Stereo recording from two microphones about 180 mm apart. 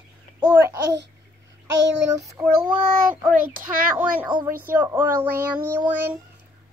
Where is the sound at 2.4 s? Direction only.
10° right (ahead or behind).